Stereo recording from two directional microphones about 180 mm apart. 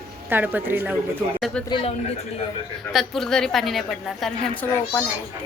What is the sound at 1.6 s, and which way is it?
Speech, 25° left (ahead or behind).